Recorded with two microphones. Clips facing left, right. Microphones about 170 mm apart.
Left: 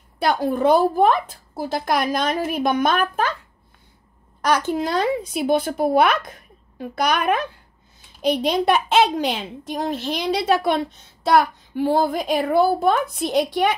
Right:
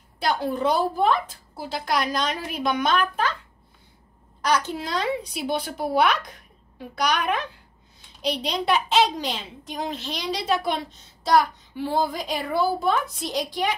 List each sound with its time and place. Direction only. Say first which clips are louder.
0.2 s speech: left 5 dB; 50° left (ahead or behind)
4.4 s a child's voice: left 4 dB; 50° left (ahead or behind)